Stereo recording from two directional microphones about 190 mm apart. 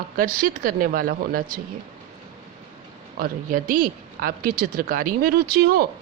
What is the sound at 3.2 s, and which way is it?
A woman's voice, 50° right (ahead or behind).